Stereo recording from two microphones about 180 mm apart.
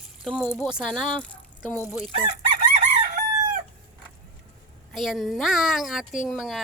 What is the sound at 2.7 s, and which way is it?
Chicken, 40° right (ahead or behind).